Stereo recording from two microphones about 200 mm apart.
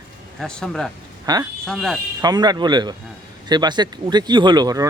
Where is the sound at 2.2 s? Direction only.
20° right (ahead or behind).